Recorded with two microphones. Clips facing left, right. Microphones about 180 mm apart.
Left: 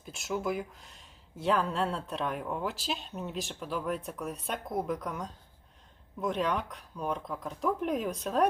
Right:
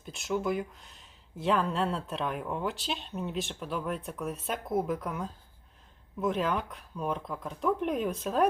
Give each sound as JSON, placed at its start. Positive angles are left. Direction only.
{"t": 0.0, "sound": "speech", "side_deg": 0}